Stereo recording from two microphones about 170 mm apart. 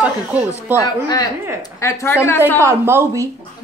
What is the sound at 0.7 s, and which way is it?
A woman's voice, 20° left (ahead or behind).